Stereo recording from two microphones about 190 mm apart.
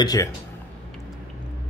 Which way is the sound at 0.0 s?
20° left (ahead or behind).